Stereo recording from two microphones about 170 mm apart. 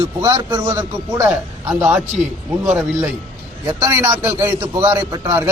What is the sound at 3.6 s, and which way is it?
A man's voice, 20° right (ahead or behind).